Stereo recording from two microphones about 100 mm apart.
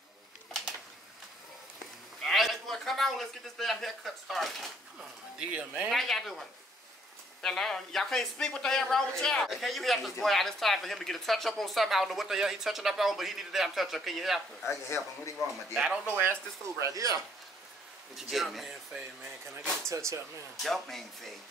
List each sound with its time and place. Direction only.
2.2 s a man's voice: centre (ahead or behind)
5.4 s speech: 15° right (ahead or behind)
5.9 s speech: 5° left (ahead or behind)
7.4 s speech: 5° left (ahead or behind)
16.1 s speech: 25° right (ahead or behind)
18.1 s speech: centre (ahead or behind)
19.9 s speech: 30° right (ahead or behind)
20.6 s speech: 5° left (ahead or behind)